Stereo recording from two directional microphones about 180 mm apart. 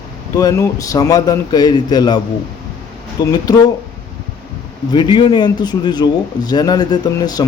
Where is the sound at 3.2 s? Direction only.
20° left (ahead or behind).